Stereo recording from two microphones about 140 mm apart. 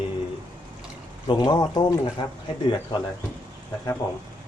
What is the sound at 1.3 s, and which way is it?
Speech, 30° left (ahead or behind).